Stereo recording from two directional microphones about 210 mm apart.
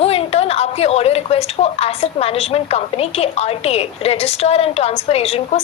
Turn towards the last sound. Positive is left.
turn(degrees=30)  # may be behind; listen again after turning